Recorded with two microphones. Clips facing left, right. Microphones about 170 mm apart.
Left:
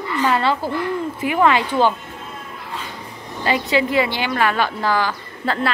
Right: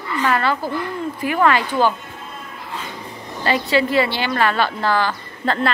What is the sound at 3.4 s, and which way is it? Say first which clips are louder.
A woman's voice: right 1 dB; 15° left (ahead or behind).